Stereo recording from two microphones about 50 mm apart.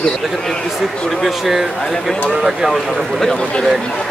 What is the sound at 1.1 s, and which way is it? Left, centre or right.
Speech, centre.